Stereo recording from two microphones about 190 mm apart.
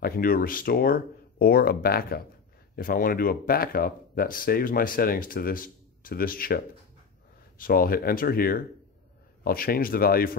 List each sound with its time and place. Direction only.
0.0 s speech: 50° left (ahead or behind)